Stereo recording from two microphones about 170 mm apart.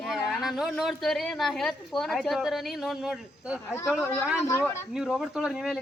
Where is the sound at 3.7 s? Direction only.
15° left (ahead or behind).